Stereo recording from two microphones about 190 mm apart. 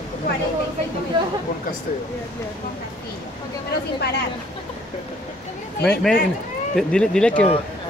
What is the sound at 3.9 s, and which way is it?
Speech, 60° left (ahead or behind).